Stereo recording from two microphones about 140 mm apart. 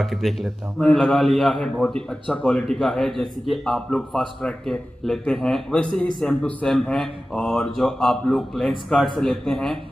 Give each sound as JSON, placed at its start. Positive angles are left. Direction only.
{"t": 0.0, "sound": "a man's voice", "side_deg": 0}